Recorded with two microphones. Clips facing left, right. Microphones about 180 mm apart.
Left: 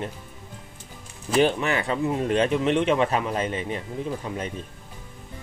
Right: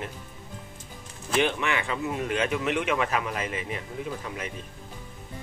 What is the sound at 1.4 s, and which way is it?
Speech, 35° left (ahead or behind).